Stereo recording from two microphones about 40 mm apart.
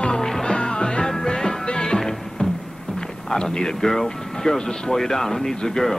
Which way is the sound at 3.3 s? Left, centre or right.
Centre.